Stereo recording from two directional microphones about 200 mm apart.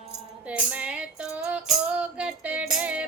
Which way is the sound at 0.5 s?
5° right (ahead or behind).